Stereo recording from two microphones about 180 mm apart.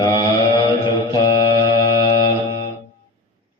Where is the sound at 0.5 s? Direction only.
25° left (ahead or behind).